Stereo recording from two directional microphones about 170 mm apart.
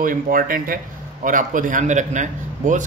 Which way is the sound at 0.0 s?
55° right (ahead or behind).